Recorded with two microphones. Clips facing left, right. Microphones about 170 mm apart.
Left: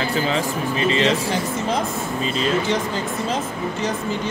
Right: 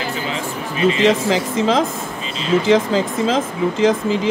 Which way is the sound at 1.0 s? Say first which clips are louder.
Right 5 dB; 90° right.